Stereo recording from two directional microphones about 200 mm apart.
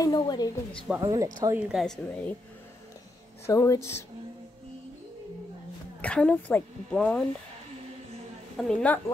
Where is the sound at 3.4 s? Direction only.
15° left (ahead or behind).